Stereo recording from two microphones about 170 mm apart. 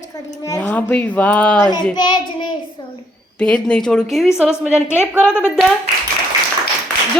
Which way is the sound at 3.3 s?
5° left (ahead or behind).